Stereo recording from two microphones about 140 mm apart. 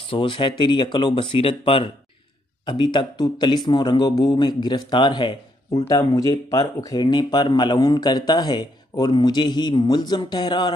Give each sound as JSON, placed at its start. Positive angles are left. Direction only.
{"t": 0.0, "sound": "speech", "side_deg": 40}